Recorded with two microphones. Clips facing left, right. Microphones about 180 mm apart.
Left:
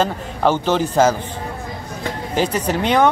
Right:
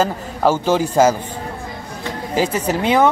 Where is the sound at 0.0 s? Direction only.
5° right (ahead or behind).